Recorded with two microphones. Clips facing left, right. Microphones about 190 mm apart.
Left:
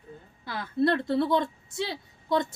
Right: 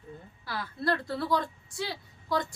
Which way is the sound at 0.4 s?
20° left (ahead or behind).